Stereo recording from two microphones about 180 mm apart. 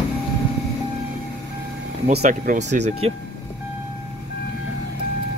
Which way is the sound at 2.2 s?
45° right (ahead or behind).